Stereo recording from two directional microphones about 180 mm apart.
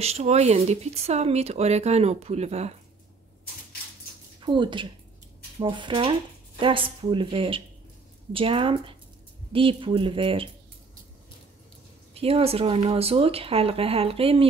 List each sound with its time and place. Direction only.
0.0 s speech: 35° right (ahead or behind)
4.4 s speech: 25° right (ahead or behind)
12.1 s speech: 30° right (ahead or behind)